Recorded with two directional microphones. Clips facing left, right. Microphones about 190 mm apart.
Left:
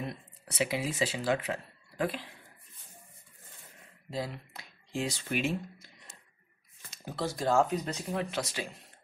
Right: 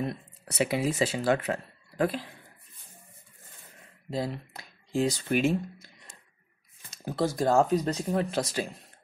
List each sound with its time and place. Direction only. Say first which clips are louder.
0.0 s speech: right 6 dB; 40° right (ahead or behind)
4.1 s speech: right 5 dB; 40° right (ahead or behind)